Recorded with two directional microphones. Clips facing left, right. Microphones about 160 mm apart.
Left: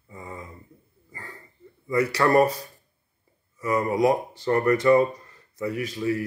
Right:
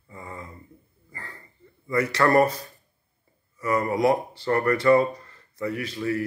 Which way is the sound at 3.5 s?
15° left (ahead or behind).